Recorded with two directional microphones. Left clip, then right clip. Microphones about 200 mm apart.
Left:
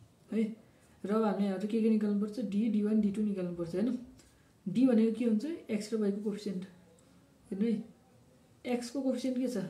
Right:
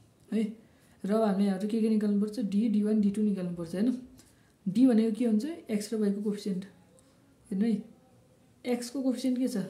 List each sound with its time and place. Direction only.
1.0 s speech: 45° right (ahead or behind)